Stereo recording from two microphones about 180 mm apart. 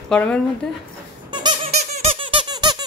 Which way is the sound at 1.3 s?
25° right (ahead or behind).